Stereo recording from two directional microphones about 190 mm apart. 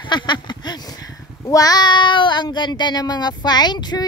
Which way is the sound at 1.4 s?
20° left (ahead or behind).